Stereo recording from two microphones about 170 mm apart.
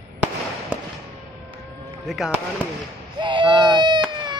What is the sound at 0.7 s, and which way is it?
Fireworks, 10° right (ahead or behind).